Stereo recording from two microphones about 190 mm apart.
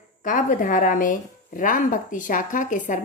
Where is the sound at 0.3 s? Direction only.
45° left (ahead or behind).